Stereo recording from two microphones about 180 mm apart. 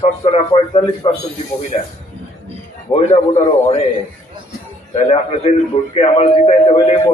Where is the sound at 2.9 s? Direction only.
35° left (ahead or behind).